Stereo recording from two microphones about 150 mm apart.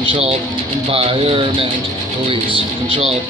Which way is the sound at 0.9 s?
40° right (ahead or behind).